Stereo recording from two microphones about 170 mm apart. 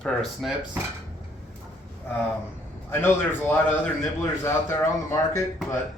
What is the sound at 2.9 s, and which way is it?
Speech, 15° left (ahead or behind).